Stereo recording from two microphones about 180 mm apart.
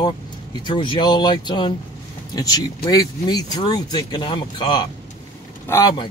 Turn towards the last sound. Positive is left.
turn(degrees=15)  # may be behind; listen again after turning